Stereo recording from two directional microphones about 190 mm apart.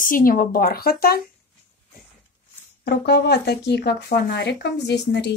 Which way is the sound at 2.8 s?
60° left (ahead or behind).